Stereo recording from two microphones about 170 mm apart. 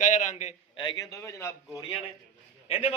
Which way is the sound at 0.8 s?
25° left (ahead or behind).